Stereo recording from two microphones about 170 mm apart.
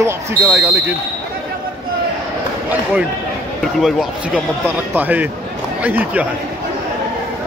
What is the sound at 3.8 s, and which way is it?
A man's voice, 10° right (ahead or behind).